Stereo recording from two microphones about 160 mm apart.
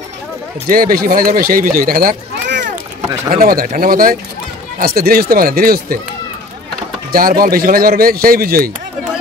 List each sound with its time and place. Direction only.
0.7 s speech: 65° right (ahead or behind)
3.3 s speech: 65° right (ahead or behind)
7.1 s speech: 65° right (ahead or behind)